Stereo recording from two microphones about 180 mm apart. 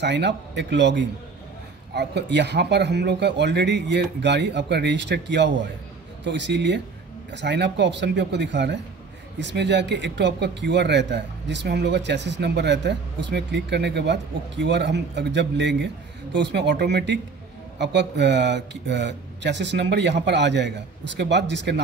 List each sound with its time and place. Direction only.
0.0 s speech: 75° right (ahead or behind)